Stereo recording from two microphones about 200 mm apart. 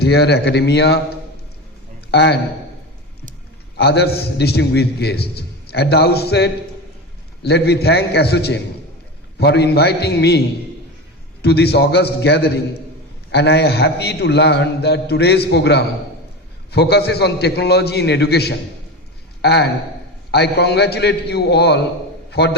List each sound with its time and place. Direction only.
0.0 s a man's voice: 55° left (ahead or behind)
2.0 s a man's voice: 55° left (ahead or behind)
3.8 s a man's voice: 55° left (ahead or behind)
11.4 s a man's voice: 55° left (ahead or behind)